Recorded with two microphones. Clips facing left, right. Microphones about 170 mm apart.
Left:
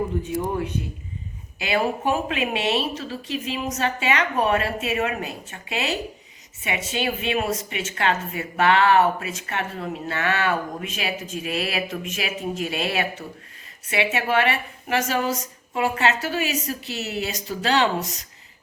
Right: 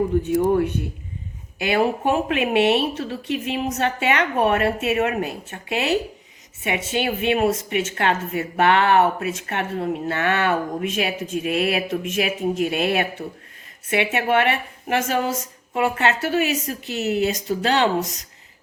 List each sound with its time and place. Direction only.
0.2 s a woman's voice: 60° right (ahead or behind)